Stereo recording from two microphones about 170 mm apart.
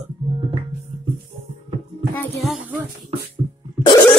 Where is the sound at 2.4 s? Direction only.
Centre (ahead or behind).